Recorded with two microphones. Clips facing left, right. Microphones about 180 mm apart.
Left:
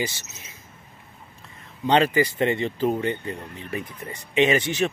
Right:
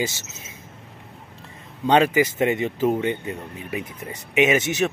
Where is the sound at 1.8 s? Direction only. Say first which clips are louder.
Right 2 dB; 10° right (ahead or behind).